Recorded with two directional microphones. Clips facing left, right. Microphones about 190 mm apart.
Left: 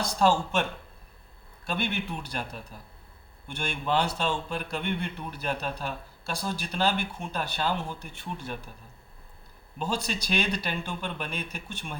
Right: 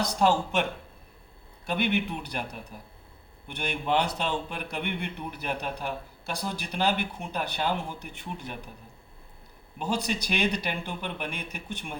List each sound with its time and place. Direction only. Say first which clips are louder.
0.0 s a man's voice: even; 15° right (ahead or behind)
1.6 s a man's voice: right 4 dB; 15° right (ahead or behind)
9.7 s a man's voice: right 2 dB; 15° right (ahead or behind)